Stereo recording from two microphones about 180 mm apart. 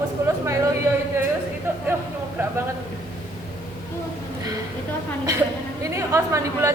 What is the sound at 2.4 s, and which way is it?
Speech, 10° right (ahead or behind).